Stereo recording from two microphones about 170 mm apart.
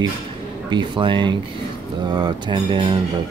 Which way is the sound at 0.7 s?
30° right (ahead or behind).